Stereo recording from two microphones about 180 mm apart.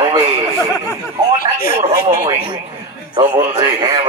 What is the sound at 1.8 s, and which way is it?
Speech, 20° right (ahead or behind).